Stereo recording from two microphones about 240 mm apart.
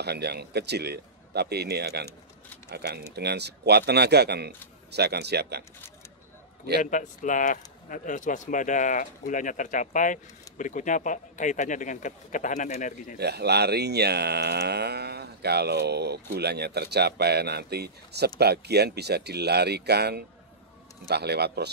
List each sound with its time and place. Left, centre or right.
0.0 s speech: right
6.8 s speech: left
13.2 s speech: right